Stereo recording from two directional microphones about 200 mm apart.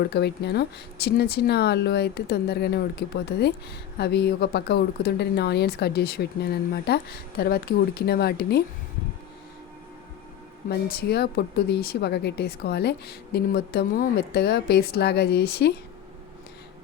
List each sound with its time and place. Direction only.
0.0 s speech: 55° left (ahead or behind)
10.7 s speech: 55° left (ahead or behind)